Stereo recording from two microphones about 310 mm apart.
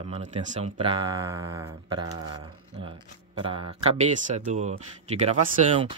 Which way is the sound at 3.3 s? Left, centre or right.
Centre.